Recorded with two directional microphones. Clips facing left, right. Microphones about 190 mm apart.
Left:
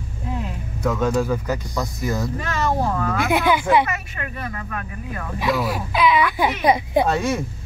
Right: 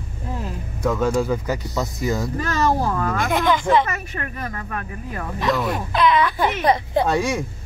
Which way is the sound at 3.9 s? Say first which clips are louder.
Right 1 dB; 40° right (ahead or behind).